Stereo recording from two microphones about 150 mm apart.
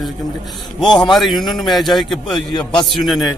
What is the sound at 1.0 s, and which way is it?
Speech, centre (ahead or behind).